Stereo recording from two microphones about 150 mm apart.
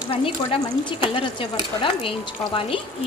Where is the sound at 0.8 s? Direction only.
35° left (ahead or behind).